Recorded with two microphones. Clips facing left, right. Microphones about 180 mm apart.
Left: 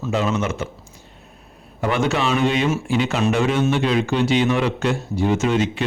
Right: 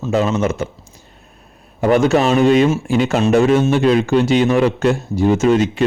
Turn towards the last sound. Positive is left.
turn(degrees=-40)  # may be behind; listen again after turning